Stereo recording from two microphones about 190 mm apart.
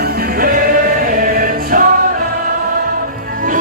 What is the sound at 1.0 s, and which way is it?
Choir, 45° right (ahead or behind).